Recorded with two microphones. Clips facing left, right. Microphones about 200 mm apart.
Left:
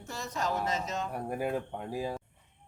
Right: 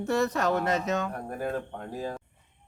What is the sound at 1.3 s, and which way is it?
Speech, 10° left (ahead or behind).